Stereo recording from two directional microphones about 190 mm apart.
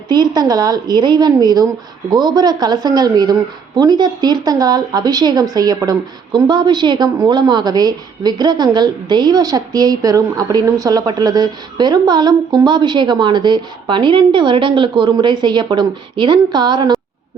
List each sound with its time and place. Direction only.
0.1 s speech: 20° right (ahead or behind)